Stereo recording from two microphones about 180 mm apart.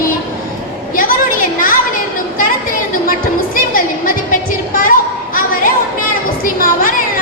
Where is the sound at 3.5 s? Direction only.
50° left (ahead or behind).